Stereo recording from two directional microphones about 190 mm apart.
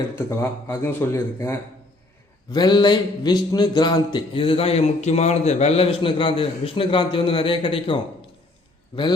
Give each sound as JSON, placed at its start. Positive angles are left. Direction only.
{"t": 0.2, "sound": "a man's voice", "side_deg": 15}